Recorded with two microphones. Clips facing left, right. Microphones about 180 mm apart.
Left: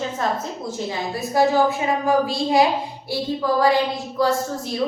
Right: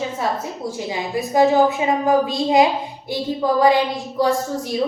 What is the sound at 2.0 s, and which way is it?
A woman's voice, 20° right (ahead or behind).